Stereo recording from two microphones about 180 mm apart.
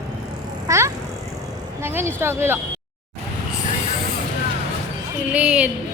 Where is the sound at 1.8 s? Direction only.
15° right (ahead or behind).